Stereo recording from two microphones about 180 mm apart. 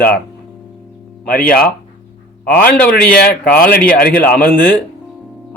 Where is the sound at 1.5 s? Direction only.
55° left (ahead or behind).